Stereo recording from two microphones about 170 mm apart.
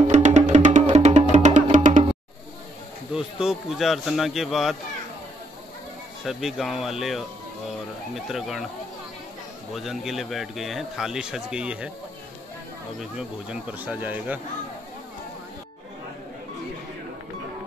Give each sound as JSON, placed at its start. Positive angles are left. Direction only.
{"t": 0.1, "sound": "music", "side_deg": -45}
{"t": 3.1, "sound": "a man's voice", "side_deg": -5}
{"t": 6.2, "sound": "a man's voice", "side_deg": 0}
{"t": 9.8, "sound": "a man's voice", "side_deg": 0}
{"t": 13.0, "sound": "speech", "side_deg": -5}